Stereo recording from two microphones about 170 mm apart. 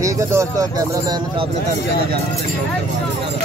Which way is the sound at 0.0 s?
15° right (ahead or behind).